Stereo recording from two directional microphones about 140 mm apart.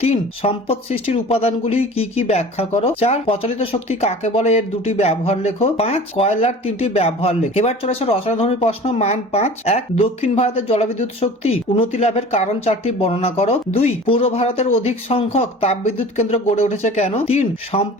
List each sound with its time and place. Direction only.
0.0 s speech: 45° left (ahead or behind)